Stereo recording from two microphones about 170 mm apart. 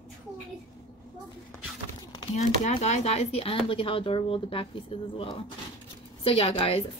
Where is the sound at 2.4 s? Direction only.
40° left (ahead or behind).